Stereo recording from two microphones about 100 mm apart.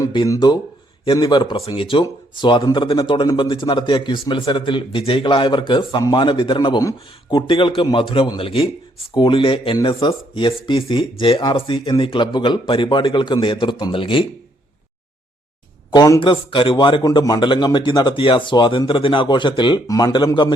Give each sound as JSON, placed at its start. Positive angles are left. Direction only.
{"t": 0.3, "sound": "speech", "side_deg": 45}
{"t": 6.7, "sound": "speech", "side_deg": 45}
{"t": 9.1, "sound": "speech", "side_deg": 55}
{"t": 13.9, "sound": "speech", "side_deg": 60}
{"t": 15.9, "sound": "speech", "side_deg": 40}
{"t": 16.2, "sound": "speech", "side_deg": 55}
{"t": 17.1, "sound": "speech", "side_deg": 45}
{"t": 19.9, "sound": "speech", "side_deg": 35}
{"t": 20.1, "sound": "speech", "side_deg": 50}